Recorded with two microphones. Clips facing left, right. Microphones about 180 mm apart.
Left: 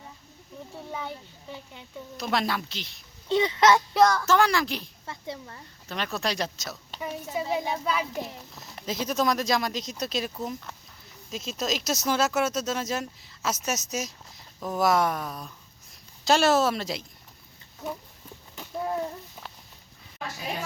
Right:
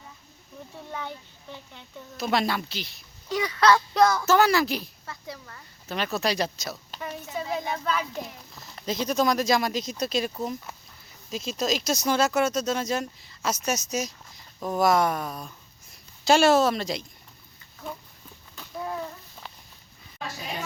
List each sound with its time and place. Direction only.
0.9 s speech: 5° left (ahead or behind)
3.2 s speech: 25° left (ahead or behind)
3.9 s speech: 5° right (ahead or behind)
5.0 s speech: 25° left (ahead or behind)
5.9 s a child's voice: 5° right (ahead or behind)
19.4 s a sound: 10° left (ahead or behind)